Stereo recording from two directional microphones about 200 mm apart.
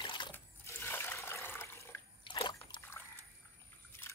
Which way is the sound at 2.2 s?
25° left (ahead or behind).